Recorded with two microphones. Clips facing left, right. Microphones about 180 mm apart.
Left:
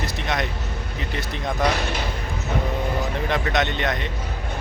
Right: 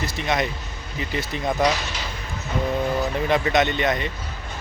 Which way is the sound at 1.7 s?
55° left (ahead or behind).